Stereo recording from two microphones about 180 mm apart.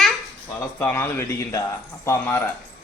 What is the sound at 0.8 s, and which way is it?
A man's voice, 10° left (ahead or behind).